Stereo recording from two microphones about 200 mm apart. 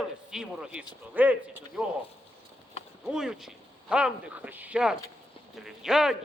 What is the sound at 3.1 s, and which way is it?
A man's voice, 5° right (ahead or behind).